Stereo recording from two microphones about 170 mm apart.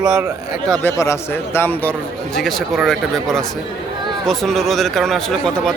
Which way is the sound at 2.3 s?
Centre (ahead or behind).